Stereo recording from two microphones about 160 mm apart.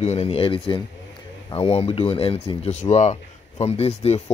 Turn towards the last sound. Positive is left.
turn(degrees=40)  # may be behind; listen again after turning